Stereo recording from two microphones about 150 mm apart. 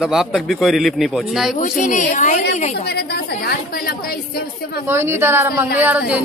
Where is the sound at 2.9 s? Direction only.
90° left.